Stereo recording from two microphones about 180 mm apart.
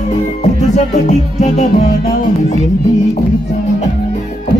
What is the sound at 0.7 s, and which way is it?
Music, 40° left (ahead or behind).